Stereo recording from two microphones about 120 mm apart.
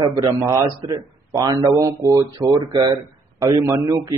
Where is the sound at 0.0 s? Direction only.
30° right (ahead or behind).